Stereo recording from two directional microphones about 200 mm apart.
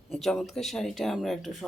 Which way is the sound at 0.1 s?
Centre (ahead or behind).